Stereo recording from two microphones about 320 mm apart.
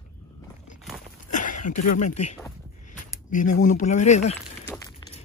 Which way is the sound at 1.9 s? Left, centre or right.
Left.